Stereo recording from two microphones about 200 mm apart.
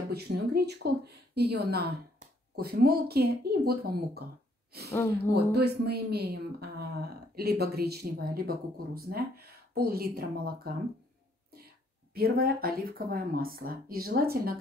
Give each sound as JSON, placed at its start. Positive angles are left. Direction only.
{"t": 0.1, "sound": "a woman's voice", "side_deg": -55}
{"t": 5.3, "sound": "a woman's voice", "side_deg": -55}
{"t": 12.1, "sound": "a woman's voice", "side_deg": -50}